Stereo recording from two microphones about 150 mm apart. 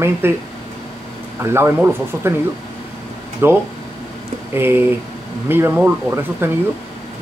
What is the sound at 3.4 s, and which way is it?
Speech, 15° right (ahead or behind).